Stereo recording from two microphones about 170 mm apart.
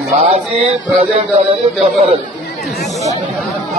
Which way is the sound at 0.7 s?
40° right (ahead or behind).